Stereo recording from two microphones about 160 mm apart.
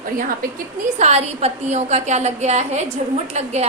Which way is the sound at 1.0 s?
45° right (ahead or behind).